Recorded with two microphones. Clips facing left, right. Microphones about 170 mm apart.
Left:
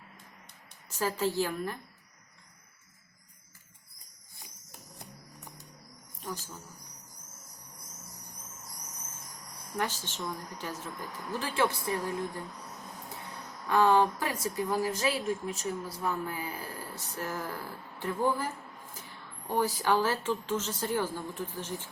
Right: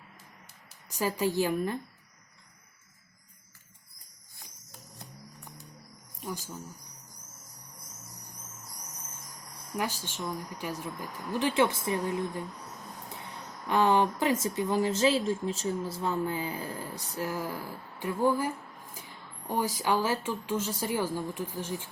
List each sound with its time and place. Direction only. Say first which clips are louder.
0.9 s speech: right 1 dB; 15° right (ahead or behind)
6.1 s speech: right 2 dB; 10° right (ahead or behind)
9.7 s speech: right 1 dB; 10° right (ahead or behind)
13.7 s speech: even; 20° right (ahead or behind)